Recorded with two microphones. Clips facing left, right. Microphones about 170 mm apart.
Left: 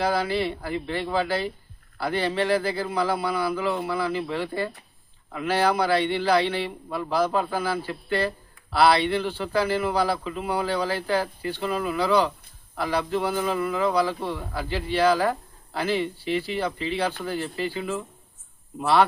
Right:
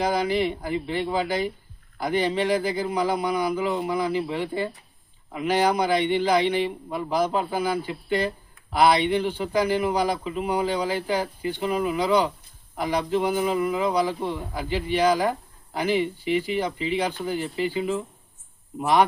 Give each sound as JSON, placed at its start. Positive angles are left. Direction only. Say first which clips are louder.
{"t": 0.0, "sound": "a man's voice", "louder": "right 1 dB", "side_deg": -15}